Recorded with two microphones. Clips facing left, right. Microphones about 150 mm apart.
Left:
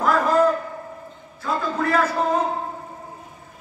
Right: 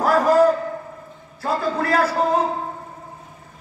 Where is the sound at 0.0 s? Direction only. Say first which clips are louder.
Right 3 dB; 35° right (ahead or behind).